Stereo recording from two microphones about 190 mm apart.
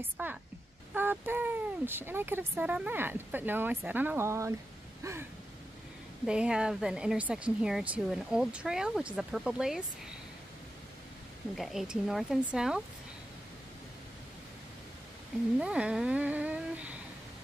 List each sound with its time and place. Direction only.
0.0 s speech: 10° right (ahead or behind)
6.2 s speech: 5° right (ahead or behind)
11.5 s speech: centre (ahead or behind)
15.6 s speech: 5° right (ahead or behind)